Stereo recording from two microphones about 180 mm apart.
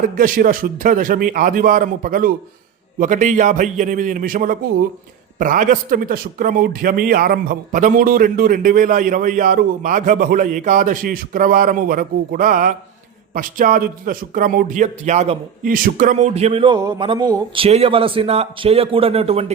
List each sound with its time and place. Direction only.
0.0 s speech: 50° right (ahead or behind); by 16.7 s 30° right (ahead or behind)
16.7 s a man's voice: 20° right (ahead or behind)